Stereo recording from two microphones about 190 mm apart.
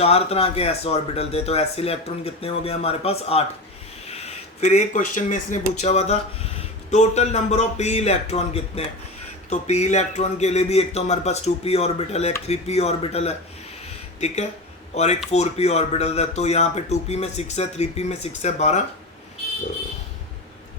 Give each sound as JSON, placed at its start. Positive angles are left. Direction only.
{"t": 0.0, "sound": "speech", "side_deg": 30}
{"t": 4.6, "sound": "speech", "side_deg": 35}